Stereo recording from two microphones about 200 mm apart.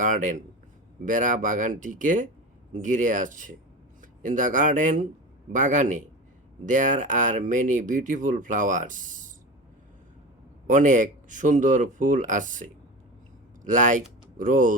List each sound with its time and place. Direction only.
0.0 s speech: 40° right (ahead or behind)
10.7 s speech: 40° right (ahead or behind)